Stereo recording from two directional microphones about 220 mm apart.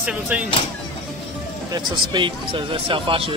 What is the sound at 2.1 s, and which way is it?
Speech, 25° right (ahead or behind).